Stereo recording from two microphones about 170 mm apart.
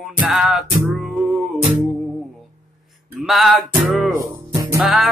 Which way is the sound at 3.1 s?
Centre (ahead or behind).